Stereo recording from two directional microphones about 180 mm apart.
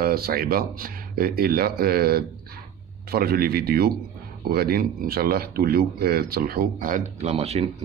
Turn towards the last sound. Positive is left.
turn(degrees=-35)  # may be behind; listen again after turning